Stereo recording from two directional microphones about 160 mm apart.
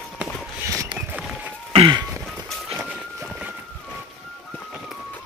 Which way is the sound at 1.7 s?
35° right (ahead or behind).